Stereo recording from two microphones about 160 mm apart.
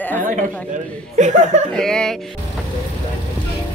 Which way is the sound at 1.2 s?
50° right (ahead or behind).